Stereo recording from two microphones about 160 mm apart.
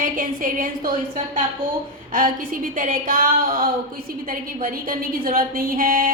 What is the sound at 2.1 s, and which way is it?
A woman's voice, 60° right (ahead or behind).